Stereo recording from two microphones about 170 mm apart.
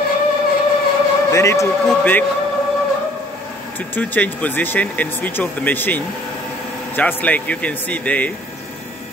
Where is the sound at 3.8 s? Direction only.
10° left (ahead or behind).